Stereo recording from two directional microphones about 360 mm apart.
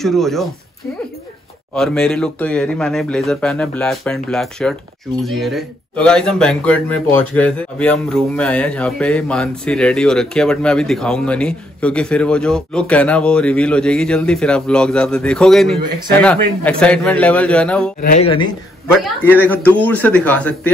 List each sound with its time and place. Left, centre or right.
0.0 s speech: centre
1.7 s speech: centre
18.0 s speech: centre
19.4 s speech: centre